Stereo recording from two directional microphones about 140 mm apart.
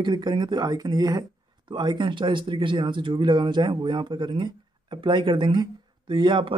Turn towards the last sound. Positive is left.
turn(degrees=-35)  # may be behind; listen again after turning